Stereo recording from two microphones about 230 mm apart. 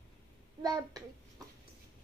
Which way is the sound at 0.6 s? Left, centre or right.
Centre.